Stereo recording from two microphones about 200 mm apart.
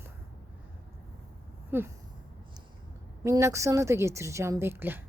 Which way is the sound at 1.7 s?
10° right (ahead or behind).